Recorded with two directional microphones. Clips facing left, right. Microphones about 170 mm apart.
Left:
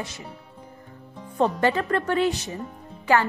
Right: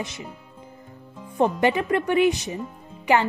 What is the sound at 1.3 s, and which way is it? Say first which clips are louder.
Speech: right 1 dB; 15° right (ahead or behind).